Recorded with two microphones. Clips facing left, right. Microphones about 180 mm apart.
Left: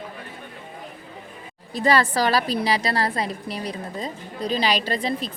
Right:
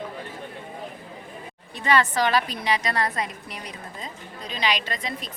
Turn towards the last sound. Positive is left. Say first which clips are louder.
# left 7 dB
turn(degrees=30)  # may be behind; listen again after turning